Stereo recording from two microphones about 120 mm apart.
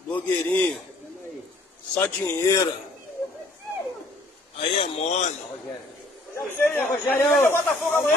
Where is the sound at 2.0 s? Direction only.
15° left (ahead or behind).